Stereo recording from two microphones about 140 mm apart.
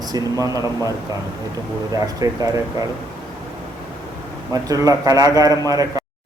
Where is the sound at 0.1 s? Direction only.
25° right (ahead or behind).